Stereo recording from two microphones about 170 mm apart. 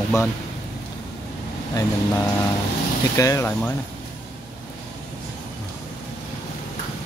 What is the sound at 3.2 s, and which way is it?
Speech, 20° left (ahead or behind).